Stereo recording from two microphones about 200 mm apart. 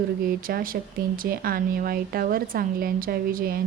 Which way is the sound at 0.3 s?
45° right (ahead or behind).